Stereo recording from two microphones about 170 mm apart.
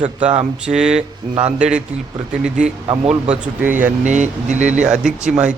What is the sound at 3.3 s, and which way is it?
Speech, 10° right (ahead or behind).